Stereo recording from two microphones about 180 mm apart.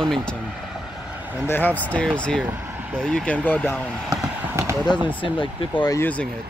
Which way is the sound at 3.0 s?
5° left (ahead or behind).